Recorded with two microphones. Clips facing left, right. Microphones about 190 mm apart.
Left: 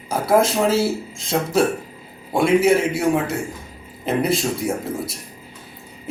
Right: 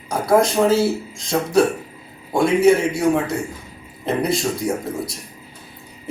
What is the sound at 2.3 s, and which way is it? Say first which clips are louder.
Speech: right 1 dB; 5° left (ahead or behind).